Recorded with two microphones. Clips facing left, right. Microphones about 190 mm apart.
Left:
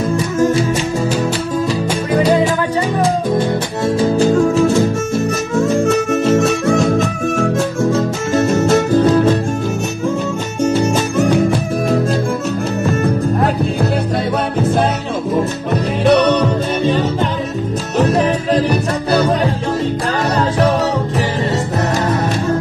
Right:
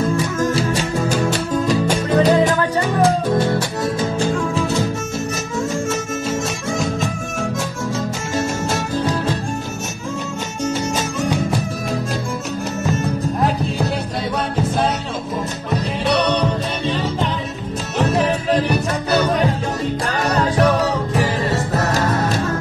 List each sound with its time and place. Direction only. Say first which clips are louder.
2.0 s music: left 2 dB; 10° left (ahead or behind)
4.2 s music: left 10 dB; 40° left (ahead or behind)
5.7 s music: left 8 dB; 65° left (ahead or behind)
8.4 s music: left 9 dB; 60° left (ahead or behind)
10.7 s music: left 7 dB; 55° left (ahead or behind)
12.9 s music: left 6 dB; 60° left (ahead or behind)
16.0 s music: left 7 dB; 50° left (ahead or behind)